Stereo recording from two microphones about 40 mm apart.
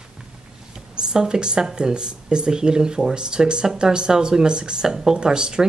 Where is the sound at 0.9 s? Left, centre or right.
Centre.